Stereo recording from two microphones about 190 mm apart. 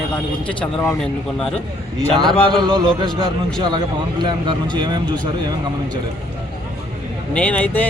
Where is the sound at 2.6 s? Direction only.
25° right (ahead or behind).